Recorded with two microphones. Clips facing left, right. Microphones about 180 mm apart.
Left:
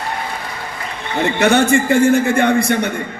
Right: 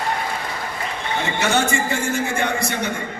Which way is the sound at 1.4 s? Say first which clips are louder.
Left 8 dB; 60° left (ahead or behind).